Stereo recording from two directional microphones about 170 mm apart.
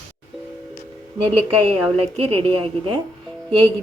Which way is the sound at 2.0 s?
35° right (ahead or behind).